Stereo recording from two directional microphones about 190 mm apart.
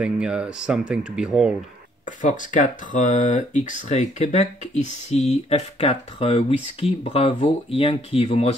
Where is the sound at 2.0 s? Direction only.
40° left (ahead or behind).